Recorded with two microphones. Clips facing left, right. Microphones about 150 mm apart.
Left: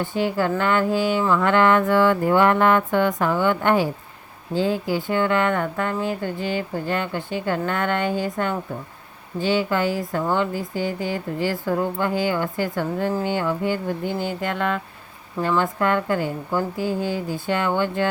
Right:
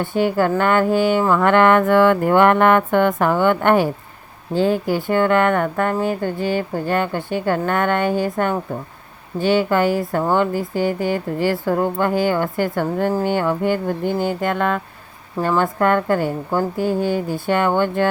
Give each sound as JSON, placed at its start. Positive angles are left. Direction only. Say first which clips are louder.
{"t": 0.0, "sound": "speech", "louder": "right 4 dB", "side_deg": -55}